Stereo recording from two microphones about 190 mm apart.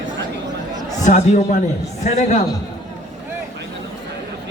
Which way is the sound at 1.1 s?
35° left (ahead or behind).